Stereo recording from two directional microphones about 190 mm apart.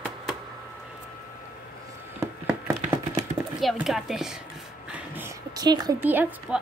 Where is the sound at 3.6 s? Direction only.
Centre (ahead or behind).